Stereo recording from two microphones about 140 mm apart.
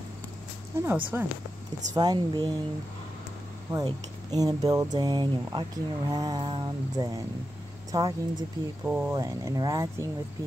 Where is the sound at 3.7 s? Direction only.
25° right (ahead or behind).